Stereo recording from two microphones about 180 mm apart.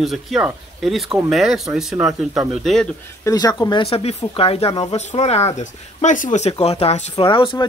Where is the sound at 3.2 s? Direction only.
20° left (ahead or behind).